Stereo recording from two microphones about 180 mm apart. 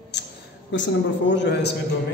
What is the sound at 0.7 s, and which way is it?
A man's voice, 90° left.